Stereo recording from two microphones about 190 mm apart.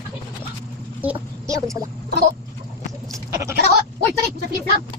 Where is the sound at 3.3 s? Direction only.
15° right (ahead or behind).